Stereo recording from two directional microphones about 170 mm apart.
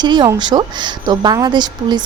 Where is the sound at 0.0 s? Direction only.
25° right (ahead or behind).